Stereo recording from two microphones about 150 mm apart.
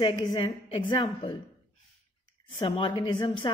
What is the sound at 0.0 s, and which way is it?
A woman's voice, 30° left (ahead or behind).